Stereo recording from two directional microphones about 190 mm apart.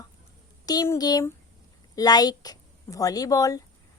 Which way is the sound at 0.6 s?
20° left (ahead or behind).